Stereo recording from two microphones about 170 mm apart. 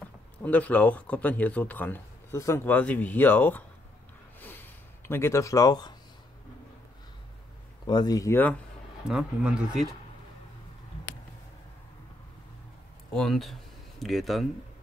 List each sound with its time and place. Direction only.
0.4 s speech: 10° left (ahead or behind)
4.4 s a sound: 10° left (ahead or behind)
7.8 s speech: 25° left (ahead or behind)
9.0 s speech: 5° right (ahead or behind)
13.1 s speech: centre (ahead or behind)